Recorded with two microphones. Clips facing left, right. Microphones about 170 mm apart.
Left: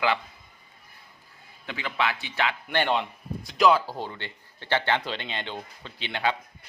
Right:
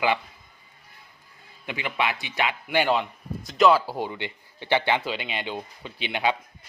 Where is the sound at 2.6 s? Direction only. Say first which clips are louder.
Right 4 dB; 5° right (ahead or behind).